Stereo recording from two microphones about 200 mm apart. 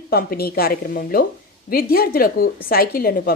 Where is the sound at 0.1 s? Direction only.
50° left (ahead or behind).